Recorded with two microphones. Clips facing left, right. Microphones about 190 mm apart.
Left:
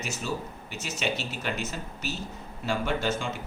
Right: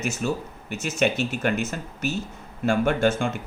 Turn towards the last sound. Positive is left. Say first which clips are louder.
# right 7 dB
turn(degrees=-55)  # may be behind; listen again after turning